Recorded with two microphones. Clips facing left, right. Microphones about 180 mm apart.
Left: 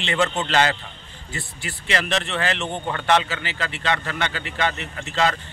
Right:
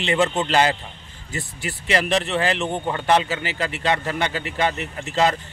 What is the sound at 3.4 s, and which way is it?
A man's voice, 40° right (ahead or behind).